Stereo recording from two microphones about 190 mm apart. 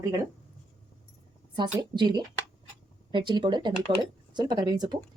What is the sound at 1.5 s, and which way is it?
Speech, 25° right (ahead or behind).